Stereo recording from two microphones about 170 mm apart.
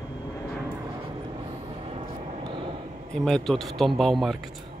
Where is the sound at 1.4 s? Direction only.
35° right (ahead or behind).